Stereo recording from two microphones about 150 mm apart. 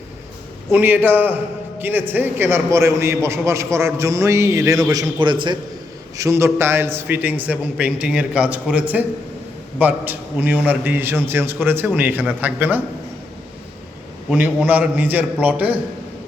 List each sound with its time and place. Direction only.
0.7 s a man's voice: 15° right (ahead or behind); by 5.5 s 30° right (ahead or behind)
6.1 s a man's voice: 20° right (ahead or behind)
14.3 s a man's voice: 10° right (ahead or behind)